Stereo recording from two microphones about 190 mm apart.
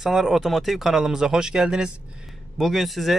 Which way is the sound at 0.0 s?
Centre (ahead or behind).